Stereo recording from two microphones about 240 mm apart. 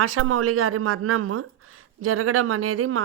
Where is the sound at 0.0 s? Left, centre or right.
Right.